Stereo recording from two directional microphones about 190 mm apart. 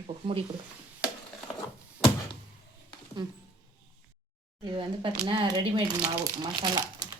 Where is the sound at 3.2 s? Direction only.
20° right (ahead or behind).